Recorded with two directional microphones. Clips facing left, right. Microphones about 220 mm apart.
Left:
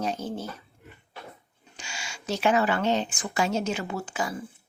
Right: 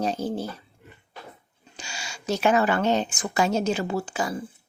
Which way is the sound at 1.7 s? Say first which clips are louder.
Right 2 dB; 35° right (ahead or behind).